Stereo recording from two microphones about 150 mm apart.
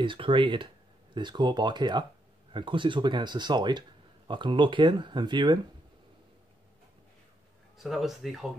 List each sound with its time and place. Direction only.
0.0 s speech: 35° right (ahead or behind)
7.7 s speech: centre (ahead or behind)